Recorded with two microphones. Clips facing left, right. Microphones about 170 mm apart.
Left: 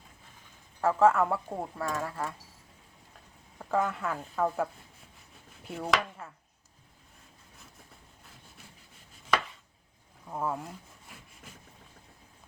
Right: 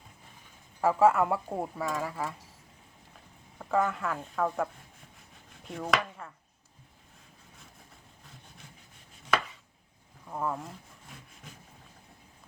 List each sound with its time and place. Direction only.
0.8 s speech: 5° right (ahead or behind)
3.6 s speech: centre (ahead or behind)
10.2 s wood: 5° left (ahead or behind)